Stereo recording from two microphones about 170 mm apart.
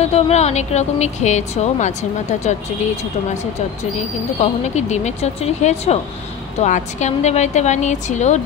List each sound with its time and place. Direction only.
0.0 s speech: 40° left (ahead or behind)
4.4 s a woman's voice: 40° left (ahead or behind)